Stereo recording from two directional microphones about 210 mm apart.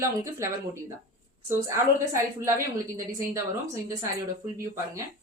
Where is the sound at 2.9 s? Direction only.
15° right (ahead or behind).